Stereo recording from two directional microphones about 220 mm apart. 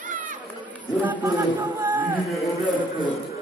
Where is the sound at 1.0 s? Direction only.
10° right (ahead or behind).